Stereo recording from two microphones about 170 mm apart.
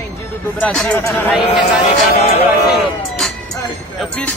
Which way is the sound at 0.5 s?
5° left (ahead or behind).